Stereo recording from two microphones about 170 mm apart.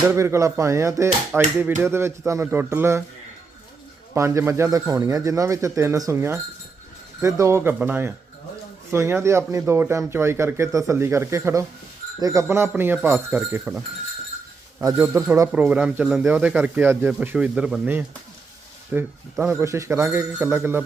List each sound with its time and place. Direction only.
0.1 s speech: 15° right (ahead or behind)
1.3 s speech: centre (ahead or behind)
1.8 s speech: 15° right (ahead or behind)
4.1 s speech: 15° right (ahead or behind)